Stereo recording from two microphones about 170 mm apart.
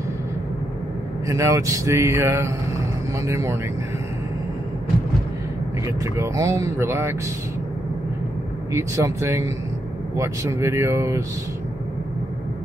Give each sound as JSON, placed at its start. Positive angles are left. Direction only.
{"t": 1.2, "sound": "speech", "side_deg": -20}
{"t": 5.9, "sound": "speech", "side_deg": -20}
{"t": 8.7, "sound": "speech", "side_deg": -15}